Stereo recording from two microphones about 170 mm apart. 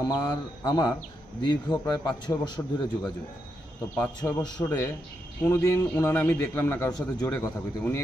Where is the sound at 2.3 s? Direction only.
25° left (ahead or behind).